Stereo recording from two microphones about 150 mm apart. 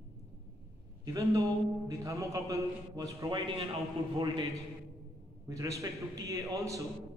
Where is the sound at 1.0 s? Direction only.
20° right (ahead or behind).